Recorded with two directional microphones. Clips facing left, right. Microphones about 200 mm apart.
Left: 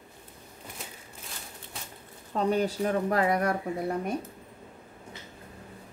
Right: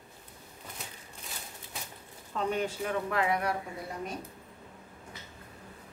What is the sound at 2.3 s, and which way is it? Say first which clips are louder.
Speech: left 5 dB; 35° left (ahead or behind).